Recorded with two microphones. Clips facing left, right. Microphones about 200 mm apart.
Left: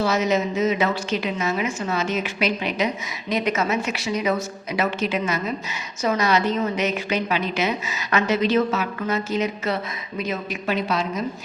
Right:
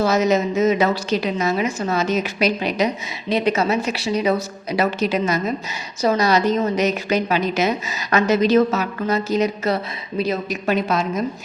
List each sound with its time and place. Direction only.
0.0 s a woman's voice: 40° right (ahead or behind)